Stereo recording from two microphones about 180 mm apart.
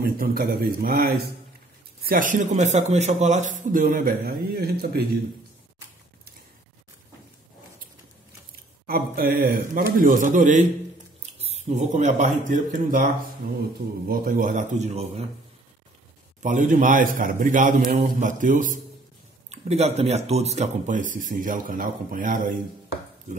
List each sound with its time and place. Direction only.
0.0 s a man's voice: 55° right (ahead or behind)
8.8 s a man's voice: 55° right (ahead or behind); by 15.2 s 35° right (ahead or behind)
16.4 s a man's voice: 45° right (ahead or behind)
19.5 s a man's voice: 35° right (ahead or behind)